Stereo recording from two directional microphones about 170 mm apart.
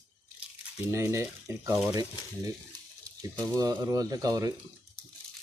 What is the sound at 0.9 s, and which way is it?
Speech, 15° right (ahead or behind).